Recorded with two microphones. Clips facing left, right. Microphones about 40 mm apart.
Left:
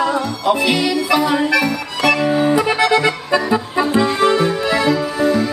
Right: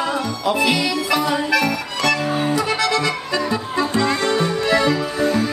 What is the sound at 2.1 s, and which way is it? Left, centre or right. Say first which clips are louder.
Music: left 5 dB; left.